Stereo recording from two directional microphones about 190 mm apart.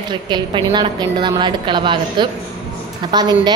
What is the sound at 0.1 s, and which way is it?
A woman's voice, 25° right (ahead or behind).